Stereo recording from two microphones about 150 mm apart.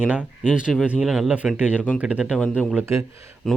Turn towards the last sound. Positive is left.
turn(degrees=-20)  # may be behind; listen again after turning